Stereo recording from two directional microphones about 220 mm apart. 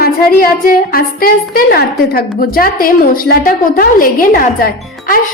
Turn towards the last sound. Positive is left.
turn(degrees=40)  # may be behind; listen again after turning